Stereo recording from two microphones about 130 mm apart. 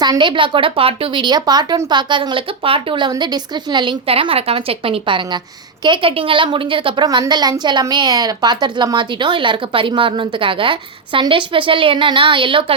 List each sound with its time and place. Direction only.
0.0 s a woman's voice: 35° right (ahead or behind)
4.0 s a woman's voice: 45° right (ahead or behind)